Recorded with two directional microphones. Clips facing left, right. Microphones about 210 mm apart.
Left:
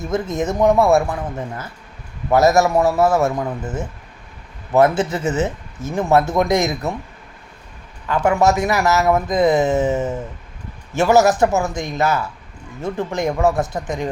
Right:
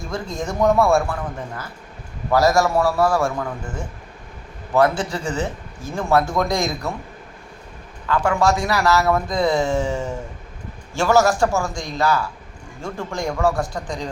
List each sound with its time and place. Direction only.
0.1 s speech: 20° left (ahead or behind)
2.3 s speech: 20° left (ahead or behind)
8.0 s speech: 20° left (ahead or behind)